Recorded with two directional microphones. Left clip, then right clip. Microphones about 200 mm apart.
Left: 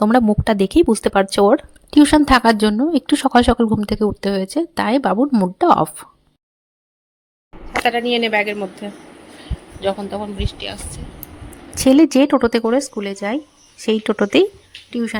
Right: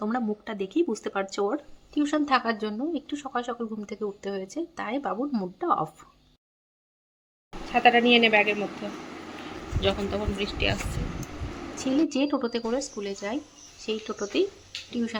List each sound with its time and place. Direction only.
0.0 s speech: 55° left (ahead or behind)
7.9 s speech: 15° left (ahead or behind)
9.8 s speech: 20° left (ahead or behind)
11.8 s speech: 50° left (ahead or behind)
13.8 s speech: 50° left (ahead or behind)
14.8 s speech: 40° left (ahead or behind)